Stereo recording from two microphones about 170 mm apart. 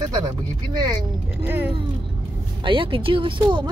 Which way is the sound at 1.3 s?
10° right (ahead or behind).